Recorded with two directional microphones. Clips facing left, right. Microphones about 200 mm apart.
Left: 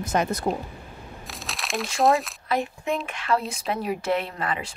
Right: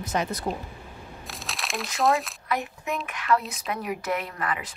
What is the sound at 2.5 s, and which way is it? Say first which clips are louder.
A woman's voice: left 4 dB; 30° left (ahead or behind).